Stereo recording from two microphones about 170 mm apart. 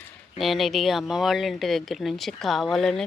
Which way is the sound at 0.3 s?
Centre (ahead or behind).